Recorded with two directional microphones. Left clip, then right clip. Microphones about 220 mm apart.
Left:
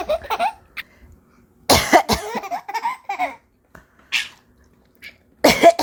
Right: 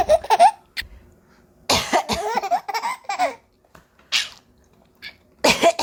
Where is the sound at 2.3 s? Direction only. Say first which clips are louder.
Right 4 dB; 15° right (ahead or behind).